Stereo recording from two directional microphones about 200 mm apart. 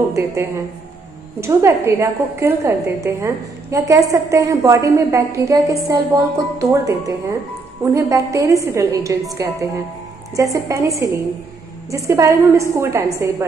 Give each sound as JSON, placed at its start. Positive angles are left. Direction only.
{"t": 1.4, "sound": "a woman's voice", "side_deg": -15}